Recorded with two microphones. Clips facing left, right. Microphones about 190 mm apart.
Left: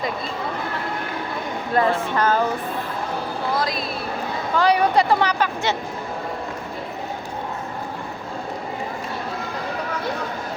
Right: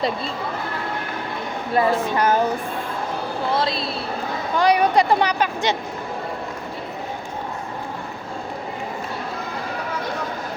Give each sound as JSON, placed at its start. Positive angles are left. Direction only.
{"t": 1.7, "sound": "speech", "side_deg": -10}
{"t": 3.6, "sound": "speech", "side_deg": -25}
{"t": 4.5, "sound": "speech", "side_deg": -15}